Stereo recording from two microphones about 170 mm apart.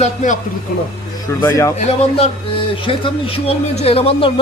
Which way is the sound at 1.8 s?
40° left (ahead or behind).